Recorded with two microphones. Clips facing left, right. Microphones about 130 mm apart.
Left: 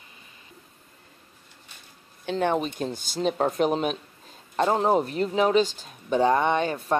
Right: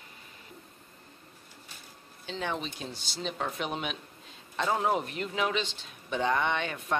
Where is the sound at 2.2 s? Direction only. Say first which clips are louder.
Left 10 dB; 50° left (ahead or behind).